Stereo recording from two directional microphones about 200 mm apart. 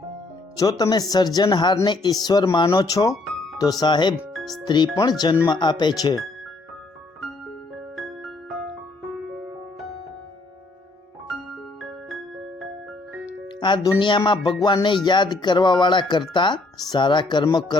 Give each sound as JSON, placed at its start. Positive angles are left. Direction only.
{"t": 0.5, "sound": "speech", "side_deg": 15}
{"t": 4.2, "sound": "music", "side_deg": 0}
{"t": 4.6, "sound": "speech", "side_deg": 20}
{"t": 7.9, "sound": "music", "side_deg": 0}
{"t": 11.8, "sound": "music", "side_deg": 0}
{"t": 13.6, "sound": "speech", "side_deg": 25}